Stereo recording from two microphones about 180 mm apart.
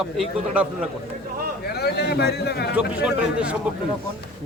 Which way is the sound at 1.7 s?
65° left (ahead or behind).